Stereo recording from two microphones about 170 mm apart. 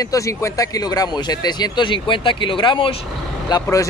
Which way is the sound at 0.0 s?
20° left (ahead or behind).